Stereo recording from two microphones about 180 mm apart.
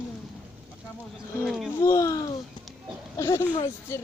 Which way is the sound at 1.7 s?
15° left (ahead or behind).